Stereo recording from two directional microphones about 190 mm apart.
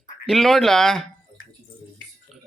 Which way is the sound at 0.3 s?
Centre (ahead or behind).